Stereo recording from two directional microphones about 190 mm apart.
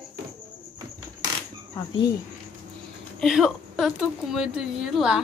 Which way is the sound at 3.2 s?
Centre (ahead or behind).